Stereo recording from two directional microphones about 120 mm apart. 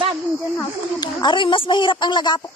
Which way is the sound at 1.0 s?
40° left (ahead or behind).